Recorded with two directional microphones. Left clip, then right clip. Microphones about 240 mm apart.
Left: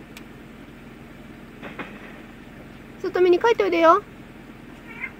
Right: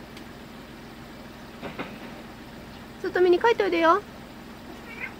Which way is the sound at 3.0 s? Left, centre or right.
Centre.